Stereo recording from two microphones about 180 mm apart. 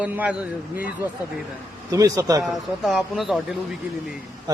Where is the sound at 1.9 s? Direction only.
20° right (ahead or behind).